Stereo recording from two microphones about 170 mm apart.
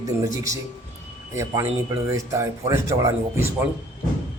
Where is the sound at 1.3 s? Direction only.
15° right (ahead or behind).